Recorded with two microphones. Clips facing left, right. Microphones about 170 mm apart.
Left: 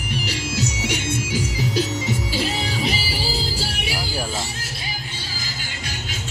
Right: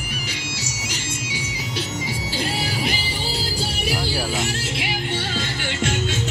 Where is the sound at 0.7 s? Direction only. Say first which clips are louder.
Left 6 dB; 60° left (ahead or behind); by 1.9 s 40° left (ahead or behind).